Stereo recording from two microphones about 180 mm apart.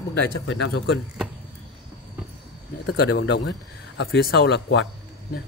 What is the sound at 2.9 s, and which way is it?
Speech, 75° left (ahead or behind).